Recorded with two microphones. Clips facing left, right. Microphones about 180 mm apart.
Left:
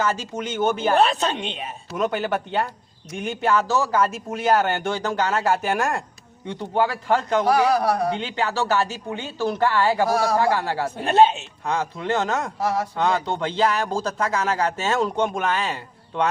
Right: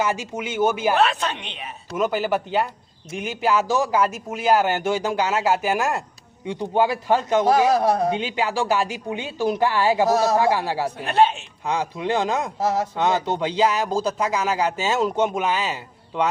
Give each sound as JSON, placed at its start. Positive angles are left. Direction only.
{"t": 0.0, "sound": "a man's voice", "side_deg": -15}
{"t": 1.1, "sound": "speech", "side_deg": 25}
{"t": 1.9, "sound": "a man's voice", "side_deg": -5}
{"t": 6.4, "sound": "a man's voice", "side_deg": -15}
{"t": 7.3, "sound": "a man's voice", "side_deg": -25}
{"t": 10.9, "sound": "speech", "side_deg": 25}
{"t": 11.6, "sound": "a man's voice", "side_deg": -15}
{"t": 12.5, "sound": "speech", "side_deg": -25}
{"t": 13.3, "sound": "a man's voice", "side_deg": -10}